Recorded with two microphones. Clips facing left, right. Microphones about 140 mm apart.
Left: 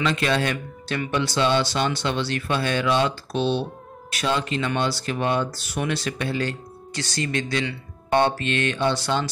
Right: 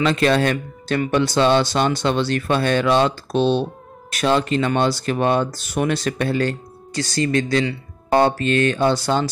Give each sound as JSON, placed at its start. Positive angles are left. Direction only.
{"t": 0.0, "sound": "speech", "side_deg": -45}